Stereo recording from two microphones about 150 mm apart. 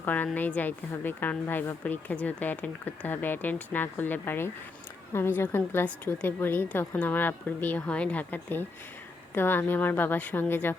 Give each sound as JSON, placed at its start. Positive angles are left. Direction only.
{"t": 0.0, "sound": "speech", "side_deg": 10}